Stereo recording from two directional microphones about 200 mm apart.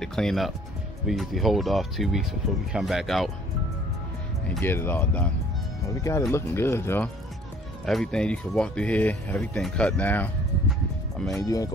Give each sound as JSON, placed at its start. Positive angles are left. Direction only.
{"t": 0.0, "sound": "speech", "side_deg": 5}
{"t": 4.5, "sound": "speech", "side_deg": 10}
{"t": 11.3, "sound": "speech", "side_deg": 15}